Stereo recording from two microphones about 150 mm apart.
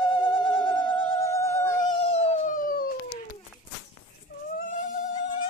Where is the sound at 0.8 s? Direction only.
20° left (ahead or behind).